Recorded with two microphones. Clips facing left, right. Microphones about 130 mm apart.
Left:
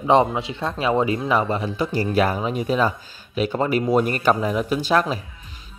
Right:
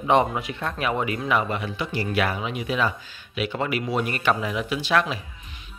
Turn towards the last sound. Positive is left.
turn(degrees=40)  # may be behind; listen again after turning